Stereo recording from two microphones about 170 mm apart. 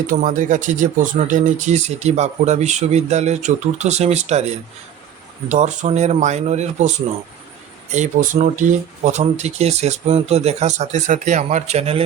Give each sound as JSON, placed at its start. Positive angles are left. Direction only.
{"t": 0.1, "sound": "speech", "side_deg": -50}
{"t": 7.9, "sound": "speech", "side_deg": -45}